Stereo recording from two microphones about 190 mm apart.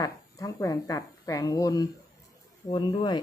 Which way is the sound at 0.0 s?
20° left (ahead or behind).